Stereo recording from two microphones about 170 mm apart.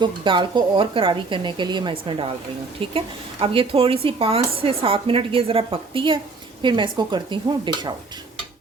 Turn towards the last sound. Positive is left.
turn(degrees=-25)  # may be behind; listen again after turning